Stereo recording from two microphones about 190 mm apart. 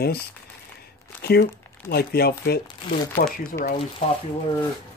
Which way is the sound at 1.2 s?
55° left (ahead or behind).